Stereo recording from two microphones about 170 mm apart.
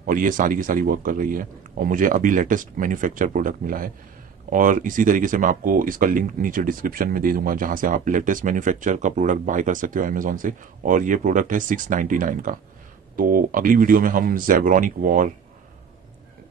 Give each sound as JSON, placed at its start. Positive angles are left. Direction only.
{"t": 0.0, "sound": "speech", "side_deg": -50}